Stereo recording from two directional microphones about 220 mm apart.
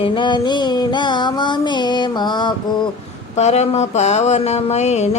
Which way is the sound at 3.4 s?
30° left (ahead or behind).